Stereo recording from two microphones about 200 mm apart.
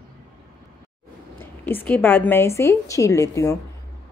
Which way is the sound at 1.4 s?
10° left (ahead or behind).